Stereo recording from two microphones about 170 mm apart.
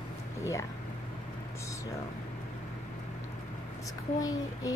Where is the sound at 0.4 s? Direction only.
15° left (ahead or behind).